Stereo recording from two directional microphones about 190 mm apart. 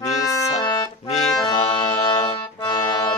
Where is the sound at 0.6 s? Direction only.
20° left (ahead or behind).